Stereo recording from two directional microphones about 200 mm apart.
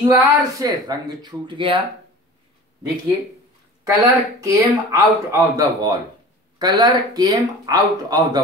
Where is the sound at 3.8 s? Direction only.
15° right (ahead or behind).